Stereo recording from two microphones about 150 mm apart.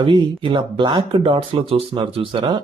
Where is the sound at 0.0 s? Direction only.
35° right (ahead or behind).